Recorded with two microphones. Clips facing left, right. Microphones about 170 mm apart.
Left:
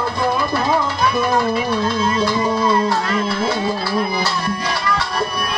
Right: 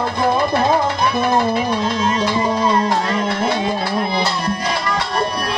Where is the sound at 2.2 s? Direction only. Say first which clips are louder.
Even; 15° right (ahead or behind).